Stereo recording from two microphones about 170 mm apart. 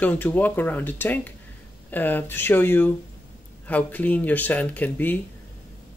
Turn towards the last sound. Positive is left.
turn(degrees=10)  # may be behind; listen again after turning